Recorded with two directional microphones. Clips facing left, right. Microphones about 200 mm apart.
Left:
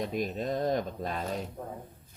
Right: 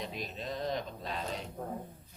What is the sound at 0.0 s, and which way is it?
Speech, 50° left (ahead or behind).